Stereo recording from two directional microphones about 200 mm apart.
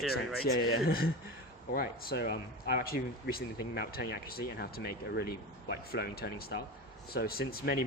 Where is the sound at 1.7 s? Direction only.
50° left (ahead or behind).